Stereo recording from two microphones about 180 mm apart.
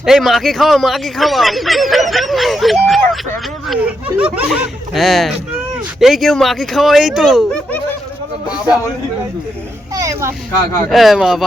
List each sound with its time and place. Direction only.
0.0 s speech: centre (ahead or behind)
9.9 s speech: 20° right (ahead or behind)
10.8 s speech: centre (ahead or behind)